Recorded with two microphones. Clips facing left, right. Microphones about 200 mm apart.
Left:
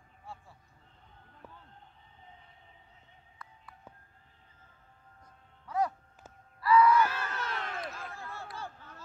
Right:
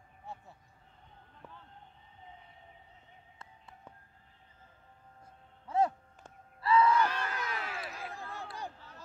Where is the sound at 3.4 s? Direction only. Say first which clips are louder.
Left 2 dB; 25° right (ahead or behind).